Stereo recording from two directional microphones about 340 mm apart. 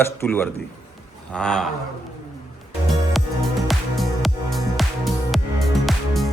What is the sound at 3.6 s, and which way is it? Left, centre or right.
Music, centre.